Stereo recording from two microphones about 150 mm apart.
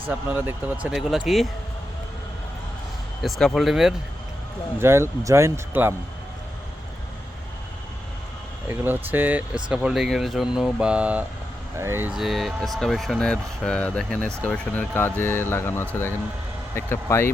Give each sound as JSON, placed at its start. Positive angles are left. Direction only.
{"t": 0.1, "sound": "speech", "side_deg": -10}
{"t": 3.2, "sound": "speech", "side_deg": 0}
{"t": 4.8, "sound": "speech", "side_deg": -15}
{"t": 8.6, "sound": "speech", "side_deg": -15}
{"t": 12.1, "sound": "speech", "side_deg": 0}